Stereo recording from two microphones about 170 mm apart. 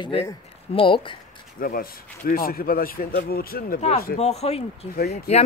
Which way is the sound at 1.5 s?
55° left (ahead or behind).